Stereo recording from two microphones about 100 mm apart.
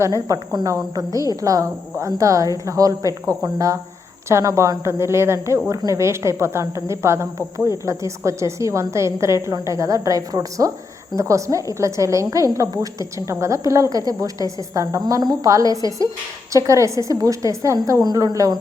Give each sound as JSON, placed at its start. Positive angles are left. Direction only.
{"t": 0.3, "sound": "a woman's voice", "side_deg": -35}